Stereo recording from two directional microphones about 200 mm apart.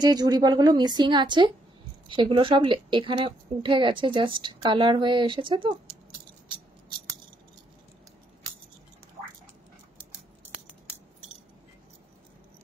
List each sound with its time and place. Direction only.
0.0 s a woman's voice: 20° right (ahead or behind)